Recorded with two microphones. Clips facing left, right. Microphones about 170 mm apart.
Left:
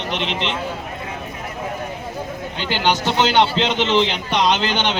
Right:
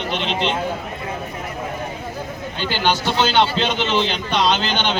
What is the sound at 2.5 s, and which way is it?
A man's voice, 20° left (ahead or behind).